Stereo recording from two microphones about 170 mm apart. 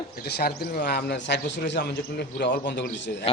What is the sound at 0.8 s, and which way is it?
A man's voice, 80° left.